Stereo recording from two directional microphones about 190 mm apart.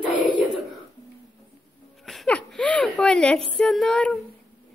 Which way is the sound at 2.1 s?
5° left (ahead or behind).